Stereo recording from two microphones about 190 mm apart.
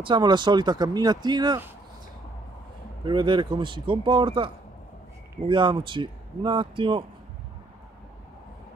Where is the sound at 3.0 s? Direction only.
25° right (ahead or behind).